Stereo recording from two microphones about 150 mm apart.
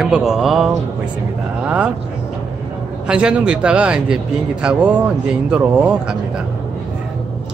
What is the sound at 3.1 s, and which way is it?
Speech, 5° right (ahead or behind).